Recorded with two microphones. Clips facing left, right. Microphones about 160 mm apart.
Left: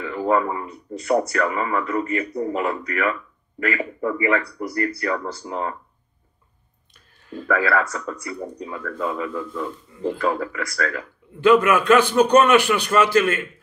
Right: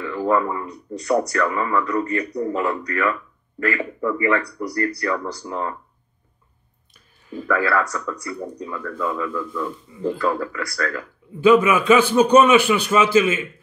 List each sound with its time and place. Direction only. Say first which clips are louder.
0.0 s speech: even; 25° left (ahead or behind)
7.4 s speech: even; 25° left (ahead or behind)
11.4 s a man's voice: right 1 dB; 5° right (ahead or behind)